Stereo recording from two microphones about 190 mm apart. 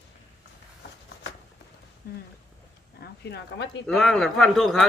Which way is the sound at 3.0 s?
60° left (ahead or behind).